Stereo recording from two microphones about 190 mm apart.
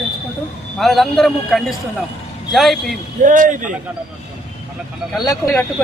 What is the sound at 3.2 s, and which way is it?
Speech, 40° right (ahead or behind).